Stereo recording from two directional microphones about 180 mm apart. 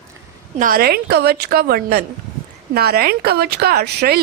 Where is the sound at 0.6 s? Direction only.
55° right (ahead or behind).